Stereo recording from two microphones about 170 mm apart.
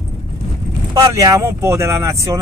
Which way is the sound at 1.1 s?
20° right (ahead or behind).